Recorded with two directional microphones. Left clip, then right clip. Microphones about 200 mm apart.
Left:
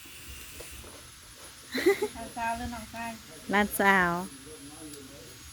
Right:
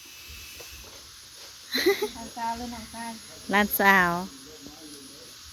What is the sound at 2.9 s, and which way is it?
Speech, 5° left (ahead or behind).